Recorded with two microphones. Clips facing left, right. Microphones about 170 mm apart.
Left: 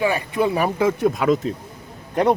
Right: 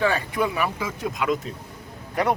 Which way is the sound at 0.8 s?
60° left (ahead or behind).